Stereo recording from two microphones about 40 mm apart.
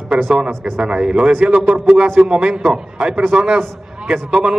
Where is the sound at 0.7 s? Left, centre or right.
Right.